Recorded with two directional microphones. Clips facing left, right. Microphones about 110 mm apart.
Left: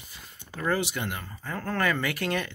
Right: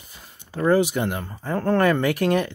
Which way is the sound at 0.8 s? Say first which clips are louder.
Right 9 dB; 40° right (ahead or behind).